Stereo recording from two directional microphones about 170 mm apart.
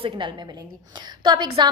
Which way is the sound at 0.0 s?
30° right (ahead or behind).